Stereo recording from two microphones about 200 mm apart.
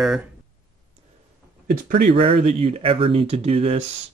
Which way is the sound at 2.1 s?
30° right (ahead or behind).